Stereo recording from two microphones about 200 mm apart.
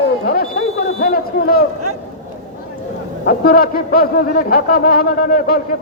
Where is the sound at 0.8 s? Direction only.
45° left (ahead or behind).